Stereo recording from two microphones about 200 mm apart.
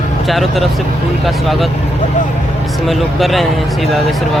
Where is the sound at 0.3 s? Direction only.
Centre (ahead or behind).